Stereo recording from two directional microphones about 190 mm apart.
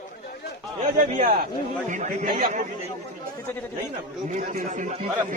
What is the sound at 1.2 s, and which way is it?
A man's voice, 45° right (ahead or behind).